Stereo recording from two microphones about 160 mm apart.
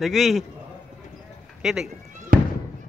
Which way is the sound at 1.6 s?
5° right (ahead or behind).